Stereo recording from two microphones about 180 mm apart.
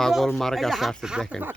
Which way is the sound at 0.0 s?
Centre (ahead or behind).